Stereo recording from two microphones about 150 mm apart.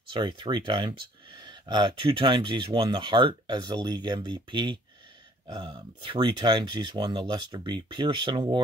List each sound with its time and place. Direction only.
0.1 s speech: 30° right (ahead or behind)